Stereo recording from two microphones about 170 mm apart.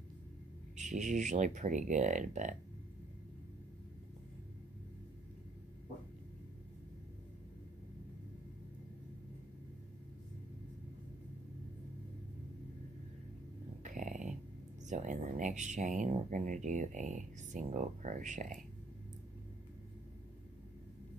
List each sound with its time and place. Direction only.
0.7 s speech: 45° right (ahead or behind)
13.8 s a sound: 50° right (ahead or behind)
14.9 s speech: 45° right (ahead or behind)